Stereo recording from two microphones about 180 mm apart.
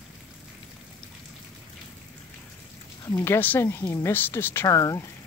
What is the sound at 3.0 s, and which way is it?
Speech, 15° left (ahead or behind).